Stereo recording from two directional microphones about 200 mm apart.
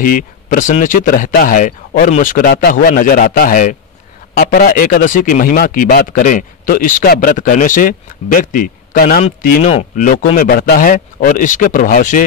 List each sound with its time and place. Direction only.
0.0 s speech: 40° left (ahead or behind)